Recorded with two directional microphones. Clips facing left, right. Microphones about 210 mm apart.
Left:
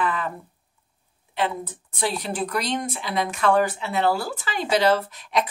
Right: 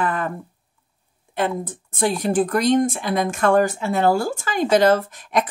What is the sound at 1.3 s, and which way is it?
Speech, 45° right (ahead or behind).